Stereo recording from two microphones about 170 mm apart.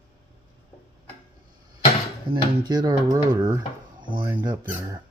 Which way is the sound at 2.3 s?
30° right (ahead or behind).